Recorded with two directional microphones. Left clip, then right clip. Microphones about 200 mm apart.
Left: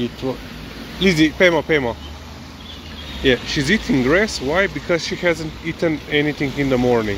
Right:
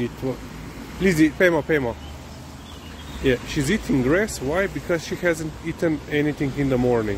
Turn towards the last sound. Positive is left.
turn(degrees=-10)  # may be behind; listen again after turning